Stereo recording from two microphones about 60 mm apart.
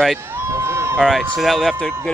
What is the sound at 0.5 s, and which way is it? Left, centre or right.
Run, right.